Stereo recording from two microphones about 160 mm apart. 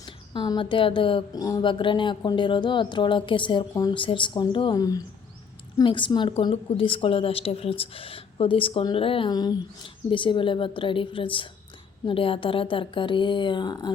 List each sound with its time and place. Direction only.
0.0 s a woman's voice: 25° left (ahead or behind)